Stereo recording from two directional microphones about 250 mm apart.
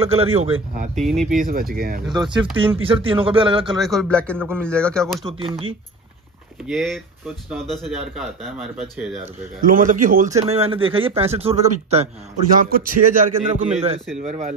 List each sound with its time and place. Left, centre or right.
0.0 s a man's voice: right
0.9 s speech: centre
1.3 s a man's voice: right
2.1 s a man's voice: centre
3.8 s speech: centre
5.2 s a man's voice: centre
6.6 s speech: centre
9.6 s a man's voice: right
12.5 s a man's voice: right